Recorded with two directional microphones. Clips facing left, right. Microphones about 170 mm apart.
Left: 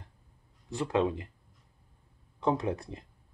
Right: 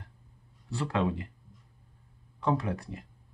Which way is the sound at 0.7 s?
20° left (ahead or behind).